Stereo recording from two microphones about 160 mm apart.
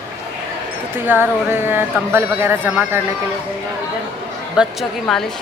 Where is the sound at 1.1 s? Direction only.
15° right (ahead or behind).